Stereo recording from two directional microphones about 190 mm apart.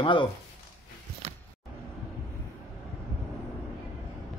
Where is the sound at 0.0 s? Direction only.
25° left (ahead or behind).